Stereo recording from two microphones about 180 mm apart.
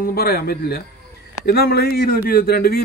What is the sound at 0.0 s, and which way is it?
Speech, 55° left (ahead or behind).